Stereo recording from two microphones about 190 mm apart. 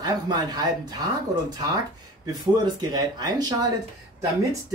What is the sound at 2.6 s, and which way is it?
Speech, 20° right (ahead or behind).